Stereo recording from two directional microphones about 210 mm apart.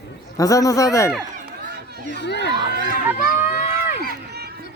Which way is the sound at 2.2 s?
55° left (ahead or behind).